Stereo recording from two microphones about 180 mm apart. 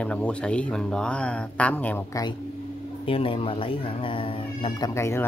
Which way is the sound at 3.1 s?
30° left (ahead or behind).